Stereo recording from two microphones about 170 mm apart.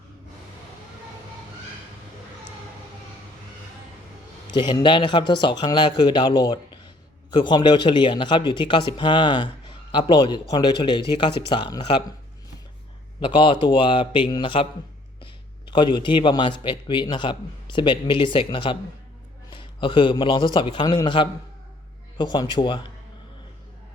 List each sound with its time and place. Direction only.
4.4 s a man's voice: 30° left (ahead or behind)
13.1 s a man's voice: 30° left (ahead or behind)